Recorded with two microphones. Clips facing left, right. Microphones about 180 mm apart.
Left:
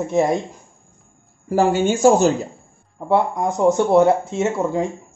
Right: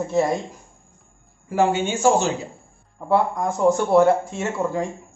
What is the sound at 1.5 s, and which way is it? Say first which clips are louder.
Speech: left 3 dB; 35° left (ahead or behind).